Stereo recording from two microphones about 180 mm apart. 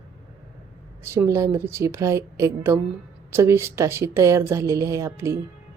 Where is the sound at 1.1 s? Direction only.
15° right (ahead or behind).